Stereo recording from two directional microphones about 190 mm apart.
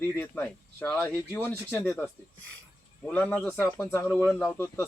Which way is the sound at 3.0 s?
5° left (ahead or behind).